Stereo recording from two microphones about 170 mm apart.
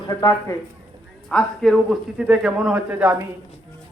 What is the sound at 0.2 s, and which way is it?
Speech, 20° left (ahead or behind).